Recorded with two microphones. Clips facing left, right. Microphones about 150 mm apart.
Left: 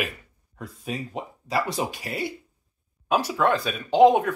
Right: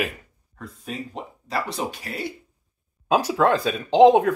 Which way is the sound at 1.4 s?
Centre (ahead or behind).